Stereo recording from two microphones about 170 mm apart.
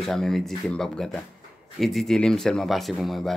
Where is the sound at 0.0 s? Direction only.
Centre (ahead or behind).